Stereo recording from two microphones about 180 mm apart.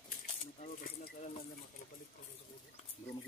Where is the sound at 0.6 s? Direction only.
50° left (ahead or behind).